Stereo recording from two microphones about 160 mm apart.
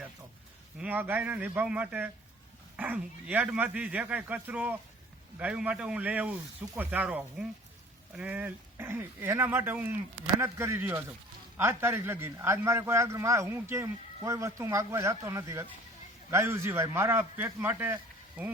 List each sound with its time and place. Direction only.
0.8 s a man's voice: 10° right (ahead or behind)